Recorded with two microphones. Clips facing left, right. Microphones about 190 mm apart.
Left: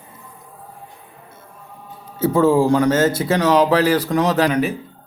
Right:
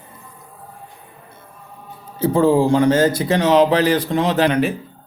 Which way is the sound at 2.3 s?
30° right (ahead or behind).